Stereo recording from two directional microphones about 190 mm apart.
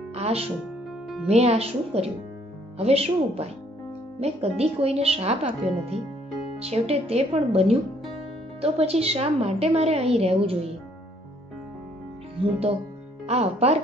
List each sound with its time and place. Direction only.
0.1 s speech: 30° right (ahead or behind)
13.3 s speech: 35° right (ahead or behind)